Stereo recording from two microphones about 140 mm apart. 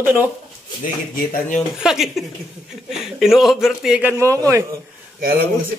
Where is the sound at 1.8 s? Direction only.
5° right (ahead or behind).